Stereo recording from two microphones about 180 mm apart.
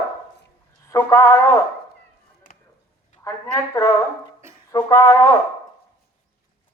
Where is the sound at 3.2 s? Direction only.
15° left (ahead or behind).